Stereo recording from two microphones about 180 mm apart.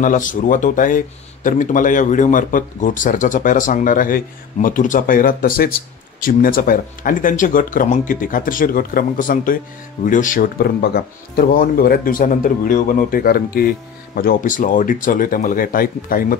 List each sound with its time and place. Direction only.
0.0 s speech: 45° left (ahead or behind)